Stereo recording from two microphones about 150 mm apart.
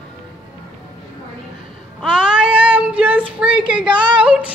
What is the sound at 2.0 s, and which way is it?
Child singing, 5° right (ahead or behind).